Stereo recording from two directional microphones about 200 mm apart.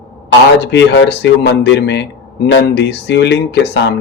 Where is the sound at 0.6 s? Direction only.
60° left (ahead or behind).